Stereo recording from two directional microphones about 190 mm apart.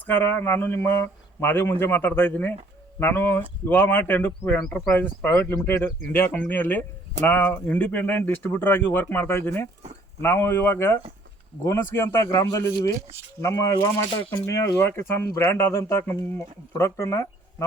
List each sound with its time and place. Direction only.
0.0 s speech: 10° left (ahead or behind)